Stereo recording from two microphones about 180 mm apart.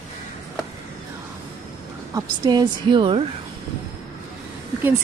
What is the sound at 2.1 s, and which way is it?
A woman's voice, 20° right (ahead or behind).